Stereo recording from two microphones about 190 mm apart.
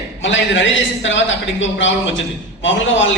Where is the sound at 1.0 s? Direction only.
80° left.